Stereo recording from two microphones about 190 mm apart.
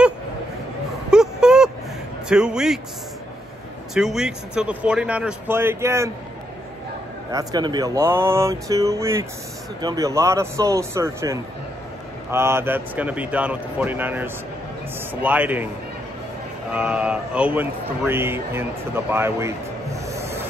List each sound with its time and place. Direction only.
1.1 s a sound: 5° right (ahead or behind)
2.2 s speech: 5° right (ahead or behind)
3.9 s speech: centre (ahead or behind)
7.2 s speech: 20° right (ahead or behind)
16.7 s speech: 5° right (ahead or behind)